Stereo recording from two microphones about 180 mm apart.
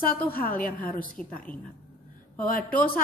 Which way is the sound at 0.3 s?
50° left (ahead or behind).